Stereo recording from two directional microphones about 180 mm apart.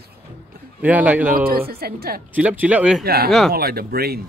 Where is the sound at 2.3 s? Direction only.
10° right (ahead or behind).